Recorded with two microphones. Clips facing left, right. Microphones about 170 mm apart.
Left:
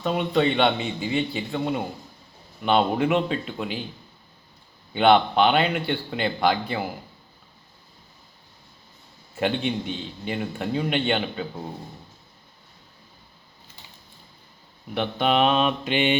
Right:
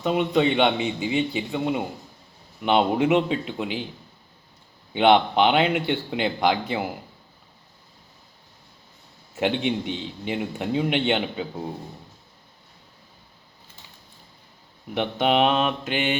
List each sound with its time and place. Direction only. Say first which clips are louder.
0.0 s a man's voice: right 1 dB; 15° right (ahead or behind)
4.9 s a man's voice: even; 15° right (ahead or behind)
9.4 s a man's voice: right 1 dB; 15° right (ahead or behind)
14.9 s a man's voice: right 1 dB; 15° right (ahead or behind)